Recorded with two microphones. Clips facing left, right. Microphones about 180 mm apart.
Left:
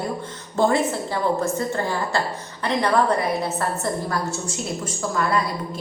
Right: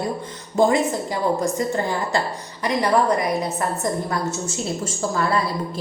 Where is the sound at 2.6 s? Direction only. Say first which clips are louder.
Right 1 dB; 10° right (ahead or behind).